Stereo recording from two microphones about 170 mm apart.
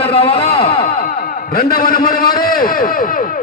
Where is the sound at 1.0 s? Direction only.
55° left (ahead or behind).